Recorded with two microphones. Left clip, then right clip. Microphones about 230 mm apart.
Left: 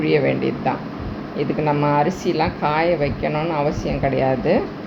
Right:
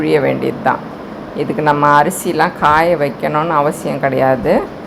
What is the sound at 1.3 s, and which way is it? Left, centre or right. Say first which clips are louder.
Speech: right 7 dB; centre.